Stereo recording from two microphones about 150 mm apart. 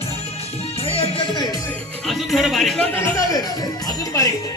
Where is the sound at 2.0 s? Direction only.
Centre (ahead or behind).